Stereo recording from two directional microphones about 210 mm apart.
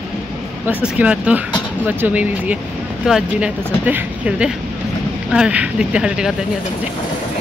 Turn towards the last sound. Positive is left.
turn(degrees=-5)  # may be behind; listen again after turning